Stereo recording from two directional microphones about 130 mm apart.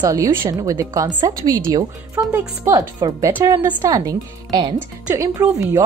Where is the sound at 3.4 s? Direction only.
25° right (ahead or behind).